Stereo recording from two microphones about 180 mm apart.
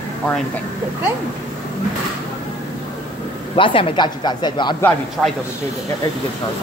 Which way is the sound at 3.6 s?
30° left (ahead or behind).